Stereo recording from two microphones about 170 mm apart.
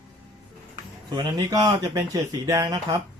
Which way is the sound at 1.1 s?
25° right (ahead or behind).